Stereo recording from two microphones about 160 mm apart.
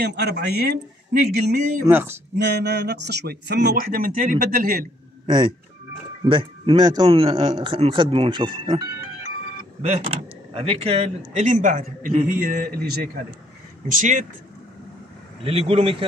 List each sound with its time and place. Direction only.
0.0 s speech: 90° right; by 1.8 s 75° right (ahead or behind)
1.9 s speech: 15° right (ahead or behind)
2.3 s speech: 90° right; by 4.8 s 65° right (ahead or behind)
5.2 s speech: 30° right (ahead or behind)
9.8 s a man's voice: 40° right (ahead or behind); by 13.1 s 70° right (ahead or behind)
13.8 s speech: 55° right (ahead or behind)
15.4 s speech: 35° right (ahead or behind)